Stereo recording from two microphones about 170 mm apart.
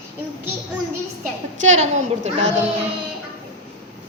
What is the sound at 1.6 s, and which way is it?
Speech, 40° right (ahead or behind).